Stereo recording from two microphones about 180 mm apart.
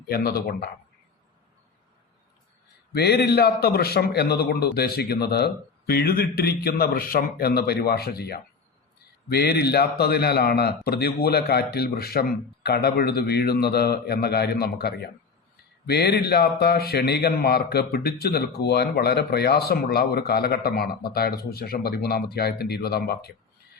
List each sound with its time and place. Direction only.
0.1 s speech: 60° left (ahead or behind)
2.9 s speech: 65° left (ahead or behind)